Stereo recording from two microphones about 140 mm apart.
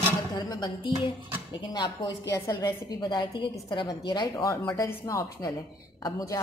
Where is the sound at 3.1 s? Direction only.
35° left (ahead or behind).